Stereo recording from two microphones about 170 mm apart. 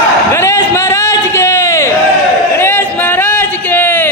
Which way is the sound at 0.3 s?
15° left (ahead or behind).